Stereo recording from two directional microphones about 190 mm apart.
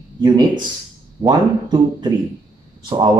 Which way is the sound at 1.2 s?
25° right (ahead or behind).